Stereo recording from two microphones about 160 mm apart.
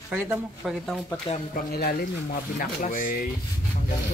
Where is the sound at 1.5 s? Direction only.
70° left (ahead or behind).